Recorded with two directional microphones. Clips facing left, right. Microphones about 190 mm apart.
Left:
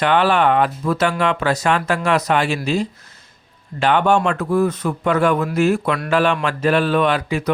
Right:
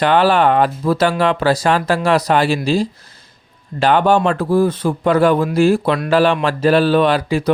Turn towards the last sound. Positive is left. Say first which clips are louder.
# right 4 dB
turn(degrees=-30)  # may be behind; listen again after turning